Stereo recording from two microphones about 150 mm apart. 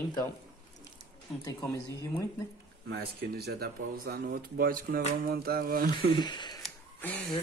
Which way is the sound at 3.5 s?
85° right.